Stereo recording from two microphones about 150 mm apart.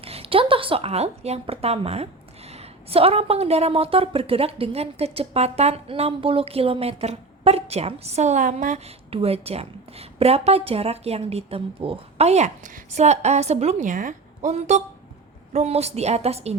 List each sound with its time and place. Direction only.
0.0 s a woman's voice: 40° right (ahead or behind)